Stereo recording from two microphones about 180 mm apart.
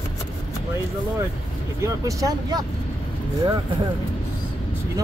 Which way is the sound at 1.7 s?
20° right (ahead or behind).